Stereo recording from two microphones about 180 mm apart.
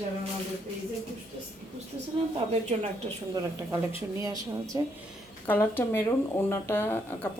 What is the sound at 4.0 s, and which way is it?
Speech, 15° right (ahead or behind).